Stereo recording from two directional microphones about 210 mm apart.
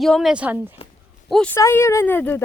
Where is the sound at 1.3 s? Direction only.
5° left (ahead or behind).